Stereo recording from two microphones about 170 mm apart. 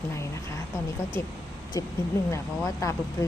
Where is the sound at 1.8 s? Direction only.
20° left (ahead or behind).